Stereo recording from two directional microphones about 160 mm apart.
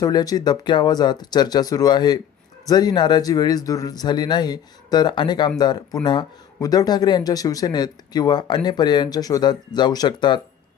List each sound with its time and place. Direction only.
0.0 s speech: 25° left (ahead or behind)